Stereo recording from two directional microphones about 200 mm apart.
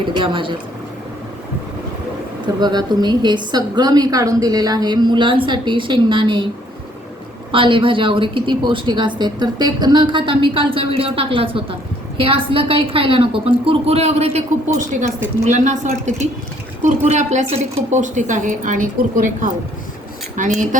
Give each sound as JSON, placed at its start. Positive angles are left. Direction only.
{"t": 0.2, "sound": "a woman's voice", "side_deg": -25}
{"t": 2.6, "sound": "a woman's voice", "side_deg": -20}
{"t": 7.5, "sound": "a woman's voice", "side_deg": -25}
{"t": 15.4, "sound": "a woman's voice", "side_deg": -35}